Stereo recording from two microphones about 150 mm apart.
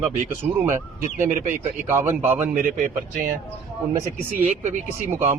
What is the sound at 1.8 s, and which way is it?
Speech, 15° right (ahead or behind).